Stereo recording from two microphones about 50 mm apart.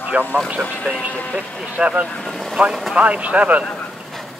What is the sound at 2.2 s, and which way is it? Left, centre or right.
Speech, centre.